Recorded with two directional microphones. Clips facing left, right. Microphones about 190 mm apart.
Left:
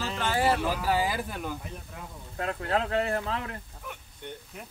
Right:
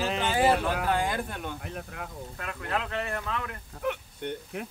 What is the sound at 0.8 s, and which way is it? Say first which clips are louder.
Speech: even; 5° left (ahead or behind).